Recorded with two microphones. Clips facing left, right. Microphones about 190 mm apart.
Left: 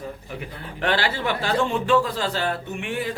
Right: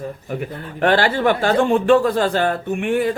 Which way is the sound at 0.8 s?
50° right (ahead or behind).